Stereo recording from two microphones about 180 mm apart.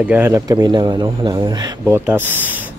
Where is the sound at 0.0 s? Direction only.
10° right (ahead or behind).